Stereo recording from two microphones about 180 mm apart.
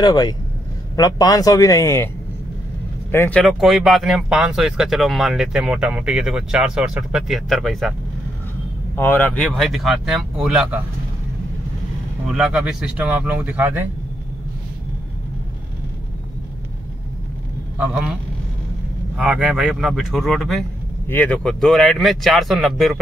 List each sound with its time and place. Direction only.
0.0 s speech: 20° left (ahead or behind)
3.1 s speech: 10° left (ahead or behind)
8.9 s speech: 10° left (ahead or behind)
12.3 s speech: 5° right (ahead or behind)
17.7 s speech: 5° right (ahead or behind)
19.1 s speech: 5° right (ahead or behind)